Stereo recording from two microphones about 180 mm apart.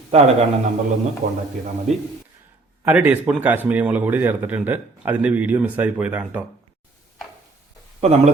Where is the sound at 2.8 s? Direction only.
10° right (ahead or behind).